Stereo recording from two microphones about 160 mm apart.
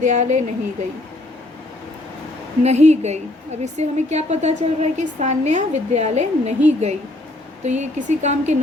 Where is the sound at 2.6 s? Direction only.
45° right (ahead or behind).